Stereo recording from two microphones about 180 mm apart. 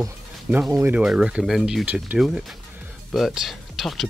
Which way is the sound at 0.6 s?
15° right (ahead or behind).